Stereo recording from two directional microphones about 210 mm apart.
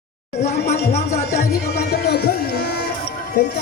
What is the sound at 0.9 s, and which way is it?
Speech, 30° left (ahead or behind).